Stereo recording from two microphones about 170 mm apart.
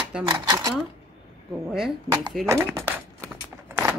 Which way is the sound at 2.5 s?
15° right (ahead or behind).